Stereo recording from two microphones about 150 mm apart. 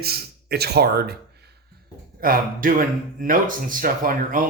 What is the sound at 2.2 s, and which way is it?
Speech, 70° right (ahead or behind).